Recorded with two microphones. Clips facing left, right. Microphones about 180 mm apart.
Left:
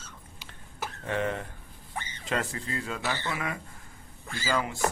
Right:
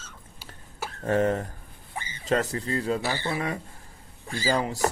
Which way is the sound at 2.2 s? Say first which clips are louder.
Right 7 dB; 40° right (ahead or behind).